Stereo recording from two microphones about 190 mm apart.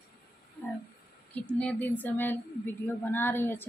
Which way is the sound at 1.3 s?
5° left (ahead or behind).